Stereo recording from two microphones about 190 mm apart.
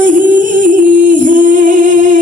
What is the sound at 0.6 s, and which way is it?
Singing, 45° right (ahead or behind).